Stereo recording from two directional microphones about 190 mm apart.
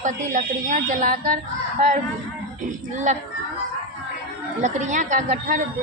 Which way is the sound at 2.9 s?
40° right (ahead or behind).